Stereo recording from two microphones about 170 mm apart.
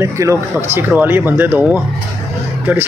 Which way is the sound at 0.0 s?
15° right (ahead or behind).